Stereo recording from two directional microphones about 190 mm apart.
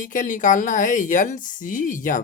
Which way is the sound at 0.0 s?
45° left (ahead or behind).